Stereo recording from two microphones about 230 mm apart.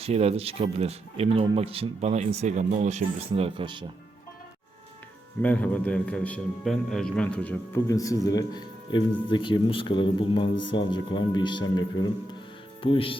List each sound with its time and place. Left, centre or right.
0.0 s speech: right
5.4 s a man's voice: centre; by 13.1 s left